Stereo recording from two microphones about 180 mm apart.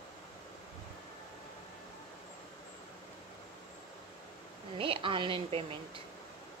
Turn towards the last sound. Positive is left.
turn(degrees=-30)  # may be behind; listen again after turning